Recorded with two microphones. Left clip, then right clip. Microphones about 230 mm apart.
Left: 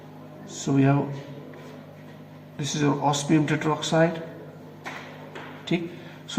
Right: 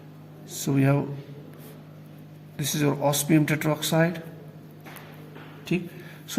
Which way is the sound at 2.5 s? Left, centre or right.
Right.